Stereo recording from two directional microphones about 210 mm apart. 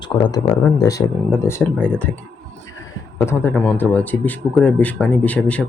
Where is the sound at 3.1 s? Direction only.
10° left (ahead or behind).